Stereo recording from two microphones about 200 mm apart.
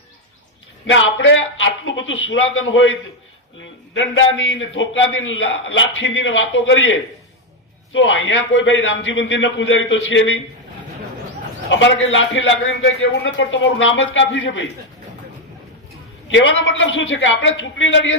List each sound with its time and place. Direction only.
0.9 s a man's voice: 70° left (ahead or behind)
7.9 s a man's voice: 70° left (ahead or behind)
11.7 s a man's voice: 70° left (ahead or behind)
16.3 s a man's voice: 70° left (ahead or behind)